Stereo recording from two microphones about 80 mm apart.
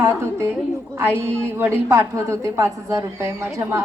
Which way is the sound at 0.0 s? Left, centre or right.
Right.